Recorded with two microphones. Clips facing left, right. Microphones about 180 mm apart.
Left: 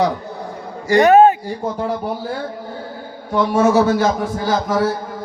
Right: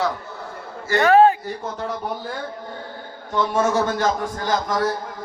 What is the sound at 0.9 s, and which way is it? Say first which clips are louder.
Speech: left 4 dB; 15° left (ahead or behind).